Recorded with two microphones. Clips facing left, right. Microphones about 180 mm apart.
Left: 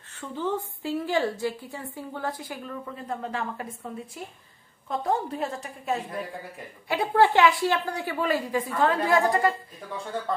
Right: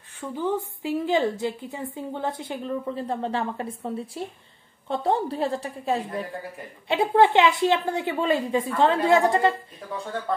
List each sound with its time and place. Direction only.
0.1 s a woman's voice: 10° right (ahead or behind)